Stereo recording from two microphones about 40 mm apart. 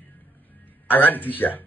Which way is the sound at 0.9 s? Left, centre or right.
Left.